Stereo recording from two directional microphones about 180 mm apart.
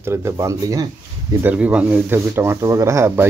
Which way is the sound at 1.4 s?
10° right (ahead or behind).